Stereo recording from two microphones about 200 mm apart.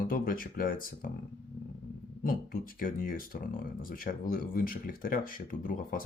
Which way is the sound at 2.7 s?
45° left (ahead or behind).